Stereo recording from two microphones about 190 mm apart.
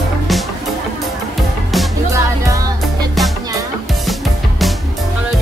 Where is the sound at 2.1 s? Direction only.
15° right (ahead or behind).